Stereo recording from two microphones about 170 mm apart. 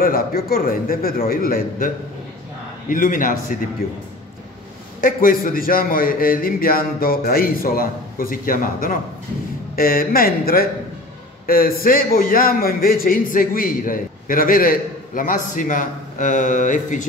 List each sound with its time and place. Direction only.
0.0 s a man's voice: 60° left (ahead or behind)
2.9 s a man's voice: 50° left (ahead or behind)
5.0 s a man's voice: 55° left (ahead or behind)